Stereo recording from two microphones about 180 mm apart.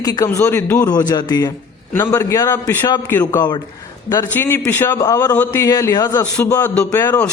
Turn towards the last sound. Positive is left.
turn(degrees=15)  # may be behind; listen again after turning